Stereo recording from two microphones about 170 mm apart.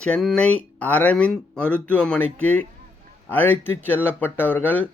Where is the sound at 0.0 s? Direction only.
5° left (ahead or behind).